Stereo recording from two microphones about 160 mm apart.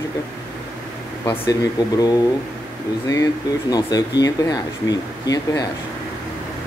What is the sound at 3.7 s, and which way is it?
Speech, 25° left (ahead or behind).